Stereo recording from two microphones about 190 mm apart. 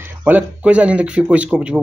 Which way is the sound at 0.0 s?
10° right (ahead or behind).